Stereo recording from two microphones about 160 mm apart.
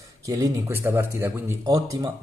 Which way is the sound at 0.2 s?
20° right (ahead or behind).